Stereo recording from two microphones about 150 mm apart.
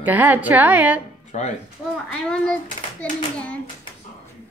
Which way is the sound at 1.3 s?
50° left (ahead or behind).